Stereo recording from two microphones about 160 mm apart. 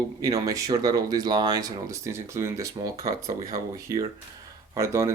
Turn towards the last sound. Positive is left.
turn(degrees=-20)  # may be behind; listen again after turning